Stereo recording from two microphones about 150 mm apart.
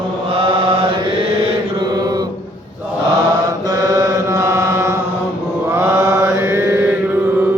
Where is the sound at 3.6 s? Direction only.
25° right (ahead or behind).